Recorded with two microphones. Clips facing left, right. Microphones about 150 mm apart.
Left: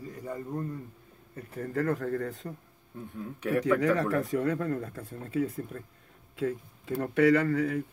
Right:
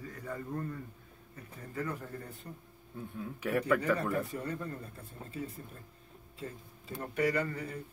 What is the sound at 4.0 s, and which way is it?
Speech, 90° left.